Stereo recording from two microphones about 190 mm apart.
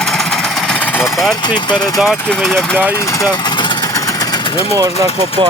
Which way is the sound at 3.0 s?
15° left (ahead or behind).